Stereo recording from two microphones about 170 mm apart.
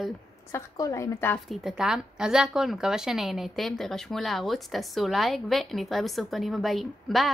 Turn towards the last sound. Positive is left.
turn(degrees=0)  # may be behind; listen again after turning